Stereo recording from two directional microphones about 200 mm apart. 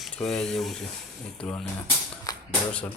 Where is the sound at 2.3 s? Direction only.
20° left (ahead or behind).